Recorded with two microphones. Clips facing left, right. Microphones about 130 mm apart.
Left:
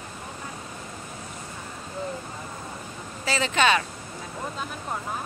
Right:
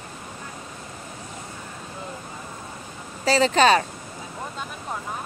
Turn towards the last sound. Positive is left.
turn(degrees=-35)  # may be behind; listen again after turning